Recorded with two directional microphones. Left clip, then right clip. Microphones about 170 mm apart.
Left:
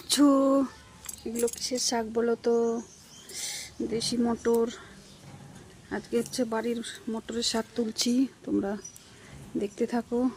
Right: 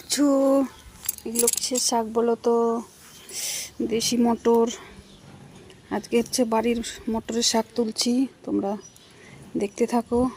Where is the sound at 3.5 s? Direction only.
30° right (ahead or behind).